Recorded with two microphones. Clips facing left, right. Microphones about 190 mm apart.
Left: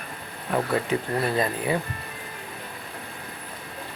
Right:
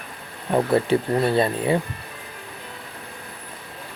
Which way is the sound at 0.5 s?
30° right (ahead or behind).